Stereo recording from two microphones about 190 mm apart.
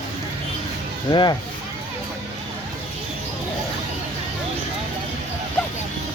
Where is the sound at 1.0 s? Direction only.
20° left (ahead or behind).